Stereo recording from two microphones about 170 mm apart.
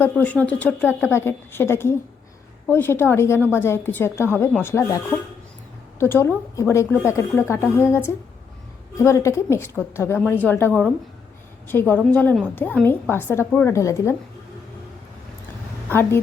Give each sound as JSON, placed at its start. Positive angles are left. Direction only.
{"t": 0.0, "sound": "a woman's voice", "side_deg": 10}
{"t": 6.0, "sound": "a woman's voice", "side_deg": 15}